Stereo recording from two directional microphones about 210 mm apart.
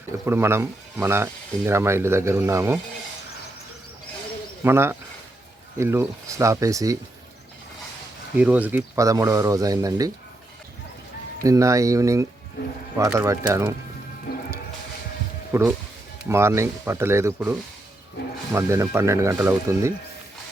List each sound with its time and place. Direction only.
0.3 s speech: 10° right (ahead or behind)
4.6 s speech: 10° right (ahead or behind)
8.4 s speech: 5° right (ahead or behind)
11.4 s speech: 15° right (ahead or behind)
14.3 s music: 50° left (ahead or behind)
15.5 s speech: 10° right (ahead or behind)
18.5 s speech: 15° right (ahead or behind)